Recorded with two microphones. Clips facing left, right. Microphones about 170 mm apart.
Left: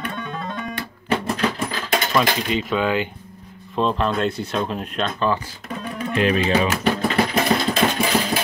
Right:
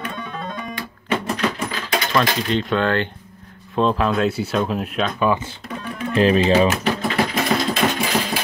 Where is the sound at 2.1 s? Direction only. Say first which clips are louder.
Right 2 dB; 5° left (ahead or behind).